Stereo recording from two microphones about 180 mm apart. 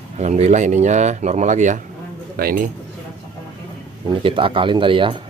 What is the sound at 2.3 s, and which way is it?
Speech, 55° right (ahead or behind).